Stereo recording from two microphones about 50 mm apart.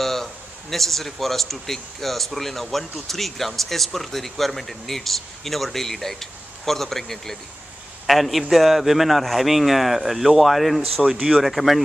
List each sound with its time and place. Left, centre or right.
0.0 s speech: centre
11.1 s speech: centre
11.4 s speech: centre